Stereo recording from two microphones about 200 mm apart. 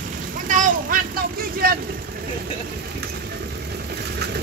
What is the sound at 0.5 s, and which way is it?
Vehicle, 40° right (ahead or behind).